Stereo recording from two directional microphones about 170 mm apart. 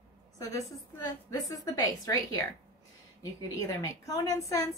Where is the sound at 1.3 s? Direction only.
20° left (ahead or behind).